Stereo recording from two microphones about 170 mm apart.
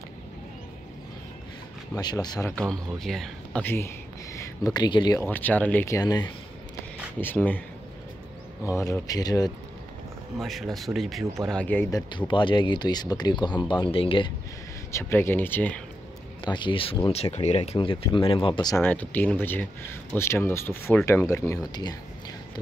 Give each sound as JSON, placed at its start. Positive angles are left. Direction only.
{"t": 2.0, "sound": "speech", "side_deg": 25}
{"t": 2.5, "sound": "speech", "side_deg": 5}
{"t": 5.2, "sound": "speech", "side_deg": 10}
{"t": 7.2, "sound": "speech", "side_deg": 10}
{"t": 8.7, "sound": "speech", "side_deg": 20}
{"t": 10.4, "sound": "speech", "side_deg": 0}
{"t": 12.3, "sound": "speech", "side_deg": 30}
{"t": 14.9, "sound": "speech", "side_deg": 15}
{"t": 16.4, "sound": "speech", "side_deg": 30}
{"t": 18.8, "sound": "speech", "side_deg": 10}